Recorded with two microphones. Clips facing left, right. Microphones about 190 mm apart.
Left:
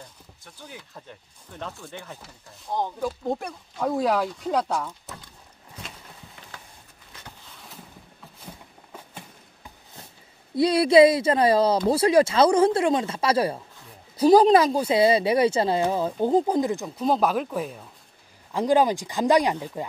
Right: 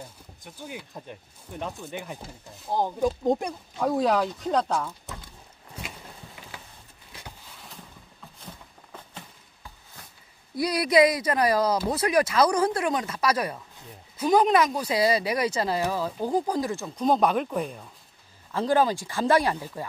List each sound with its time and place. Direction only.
0.4 s speech: 15° right (ahead or behind)
3.7 s speech: centre (ahead or behind)
8.5 s a sound: 10° left (ahead or behind)
10.5 s speech: 25° left (ahead or behind)
16.9 s speech: 5° left (ahead or behind)
18.5 s speech: 15° left (ahead or behind)